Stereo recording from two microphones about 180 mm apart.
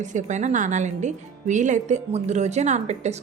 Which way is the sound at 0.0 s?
40° right (ahead or behind).